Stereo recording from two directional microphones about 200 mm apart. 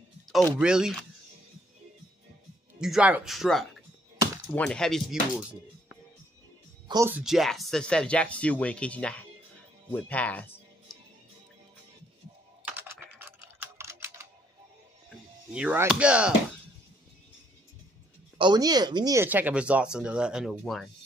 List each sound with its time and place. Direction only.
0.3 s speech: 5° right (ahead or behind)
2.8 s speech: 5° right (ahead or behind)
6.9 s speech: 15° right (ahead or behind)
7.2 s speech: centre (ahead or behind)
9.9 s music: 5° left (ahead or behind)
12.6 s typing: 10° right (ahead or behind)
15.5 s speech: 5° right (ahead or behind)
18.4 s speech: 20° right (ahead or behind); by 20.9 s centre (ahead or behind)